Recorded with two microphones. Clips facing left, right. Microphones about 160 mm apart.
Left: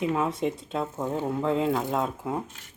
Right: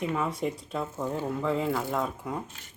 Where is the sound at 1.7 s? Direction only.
20° left (ahead or behind).